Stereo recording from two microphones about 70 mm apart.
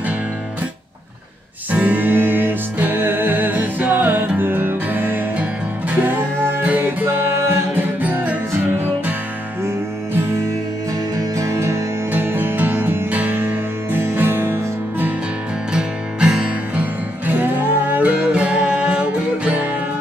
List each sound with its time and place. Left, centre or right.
1.7 s music: right
8.0 s music: right
11.3 s music: right
12.1 s music: right
15.7 s music: centre
17.9 s music: centre